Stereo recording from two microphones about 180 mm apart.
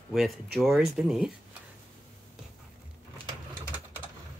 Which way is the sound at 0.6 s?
Centre (ahead or behind).